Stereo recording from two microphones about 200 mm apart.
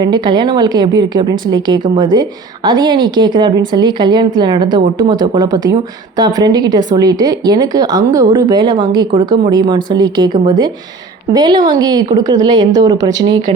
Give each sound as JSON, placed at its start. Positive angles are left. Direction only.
{"t": 0.0, "sound": "a woman's voice", "side_deg": -20}